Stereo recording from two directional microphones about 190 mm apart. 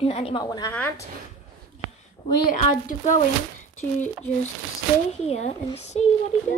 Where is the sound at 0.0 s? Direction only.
30° left (ahead or behind).